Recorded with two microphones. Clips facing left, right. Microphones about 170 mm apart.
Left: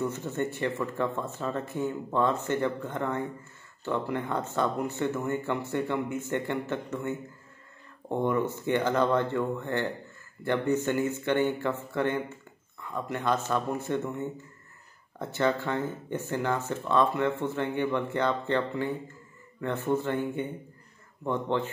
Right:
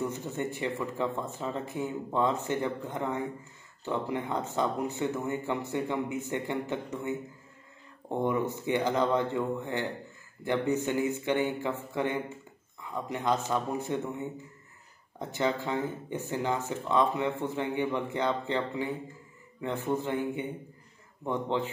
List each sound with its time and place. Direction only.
0.0 s speech: 15° right (ahead or behind)
20.0 s speech: 15° right (ahead or behind)